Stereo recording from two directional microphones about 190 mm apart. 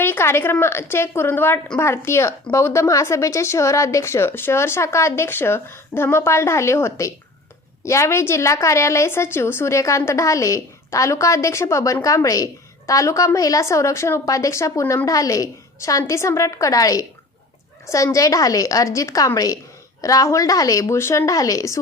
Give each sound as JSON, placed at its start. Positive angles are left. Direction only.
{"t": 0.0, "sound": "a woman's voice", "side_deg": 10}